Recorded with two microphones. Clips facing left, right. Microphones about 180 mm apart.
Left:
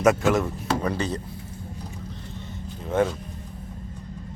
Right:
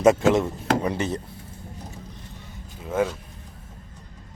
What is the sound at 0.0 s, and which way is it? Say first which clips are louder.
Speech: right 2 dB; 25° right (ahead or behind).